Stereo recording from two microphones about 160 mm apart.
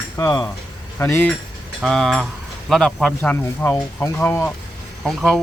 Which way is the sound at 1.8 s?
Centre (ahead or behind).